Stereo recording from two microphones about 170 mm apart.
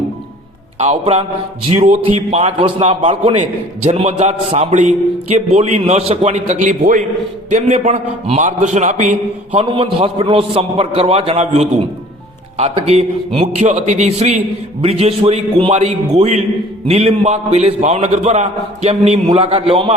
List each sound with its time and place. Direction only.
0.8 s a man's voice: 40° right (ahead or behind)
9.5 s a man's voice: 35° right (ahead or behind)